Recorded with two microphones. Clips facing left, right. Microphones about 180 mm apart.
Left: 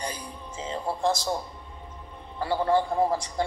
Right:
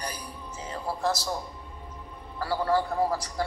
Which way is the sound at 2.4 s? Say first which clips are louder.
Left 2 dB; 25° left (ahead or behind).